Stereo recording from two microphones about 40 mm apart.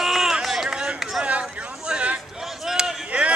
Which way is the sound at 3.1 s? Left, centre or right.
Right.